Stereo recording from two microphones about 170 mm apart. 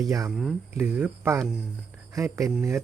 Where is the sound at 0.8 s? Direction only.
15° right (ahead or behind).